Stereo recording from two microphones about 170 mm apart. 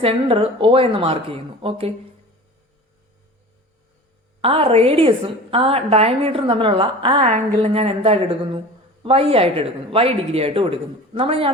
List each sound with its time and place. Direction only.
0.0 s a woman's voice: 30° right (ahead or behind)
4.4 s a woman's voice: 35° right (ahead or behind)